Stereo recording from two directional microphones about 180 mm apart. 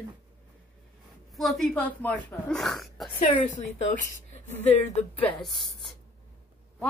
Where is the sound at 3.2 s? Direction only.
45° left (ahead or behind).